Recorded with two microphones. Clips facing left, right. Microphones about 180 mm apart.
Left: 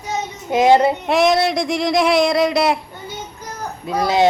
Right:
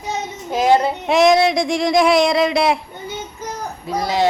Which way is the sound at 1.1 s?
Centre (ahead or behind).